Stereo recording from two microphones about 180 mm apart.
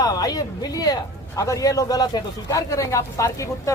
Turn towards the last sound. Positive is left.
turn(degrees=20)  # may be behind; listen again after turning